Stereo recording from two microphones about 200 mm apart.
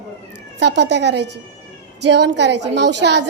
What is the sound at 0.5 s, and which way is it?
A woman's voice, 60° right (ahead or behind).